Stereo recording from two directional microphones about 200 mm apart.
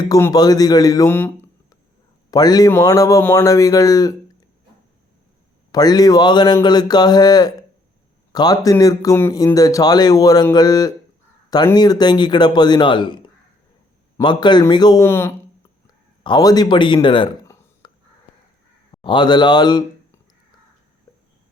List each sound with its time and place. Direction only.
0.0 s speech: 15° left (ahead or behind)
5.7 s speech: 20° left (ahead or behind)
19.0 s a man's voice: 20° left (ahead or behind)